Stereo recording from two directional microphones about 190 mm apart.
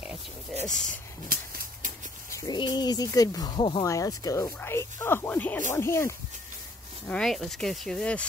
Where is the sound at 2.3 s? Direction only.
20° left (ahead or behind).